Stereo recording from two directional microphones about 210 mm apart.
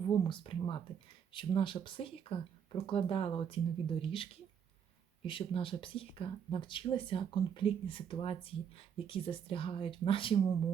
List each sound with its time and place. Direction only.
0.3 s speech: 25° left (ahead or behind)